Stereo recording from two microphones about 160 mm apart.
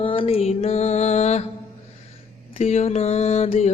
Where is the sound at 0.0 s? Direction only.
35° left (ahead or behind).